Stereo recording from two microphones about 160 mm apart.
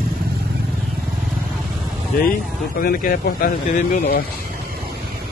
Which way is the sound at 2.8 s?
65° left (ahead or behind).